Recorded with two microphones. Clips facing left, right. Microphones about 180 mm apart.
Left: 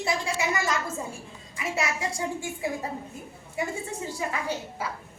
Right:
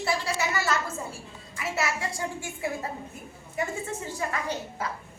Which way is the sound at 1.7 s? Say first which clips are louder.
Left 1 dB; 20° left (ahead or behind).